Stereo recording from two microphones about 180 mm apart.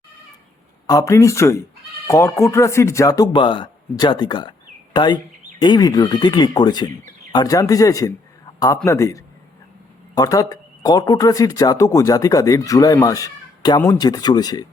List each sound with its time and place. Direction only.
0.9 s speech: 20° left (ahead or behind)